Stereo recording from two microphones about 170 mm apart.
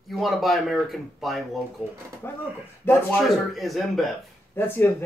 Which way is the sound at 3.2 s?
Centre (ahead or behind).